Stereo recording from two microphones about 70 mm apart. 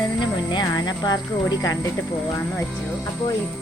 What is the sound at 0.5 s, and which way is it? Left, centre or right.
Music, left.